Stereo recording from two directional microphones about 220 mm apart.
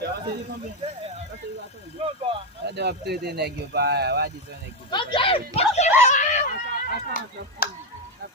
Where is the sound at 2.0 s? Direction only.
25° right (ahead or behind).